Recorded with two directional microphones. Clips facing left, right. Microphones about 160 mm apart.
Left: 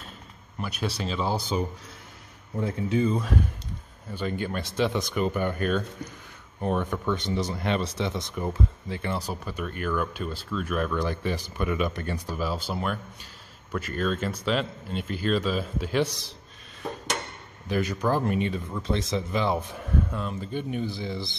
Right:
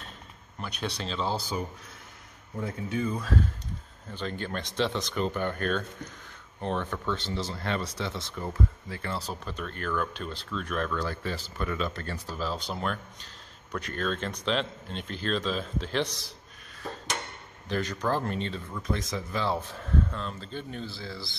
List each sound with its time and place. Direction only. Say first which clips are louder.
0.6 s speech: left 4 dB; 5° left (ahead or behind)
2.6 s speech: left 6 dB; 25° left (ahead or behind); by 16.2 s 10° left (ahead or behind)
17.6 s speech: left 3 dB; 10° left (ahead or behind)
18.7 s speech: left 4 dB; 25° left (ahead or behind)